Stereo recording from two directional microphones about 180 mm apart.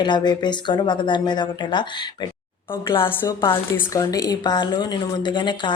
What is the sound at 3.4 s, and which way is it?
Speech, 25° left (ahead or behind).